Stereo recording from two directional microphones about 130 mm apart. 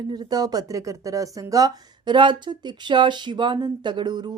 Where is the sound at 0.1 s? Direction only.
30° right (ahead or behind).